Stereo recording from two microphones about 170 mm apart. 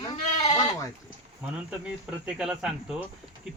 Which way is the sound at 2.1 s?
5° right (ahead or behind).